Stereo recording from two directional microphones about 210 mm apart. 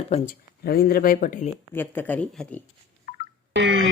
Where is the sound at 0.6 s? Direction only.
45° left (ahead or behind).